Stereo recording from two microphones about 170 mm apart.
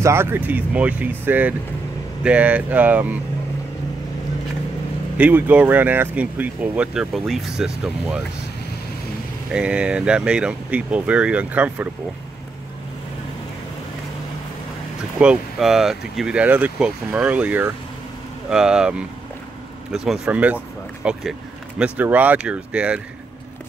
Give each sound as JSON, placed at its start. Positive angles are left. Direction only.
{"t": 0.0, "sound": "speech", "side_deg": -15}
{"t": 5.1, "sound": "speech", "side_deg": -10}
{"t": 9.5, "sound": "speech", "side_deg": -5}
{"t": 15.1, "sound": "speech", "side_deg": -5}